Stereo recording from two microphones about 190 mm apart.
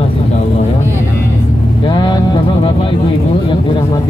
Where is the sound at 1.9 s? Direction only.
25° left (ahead or behind).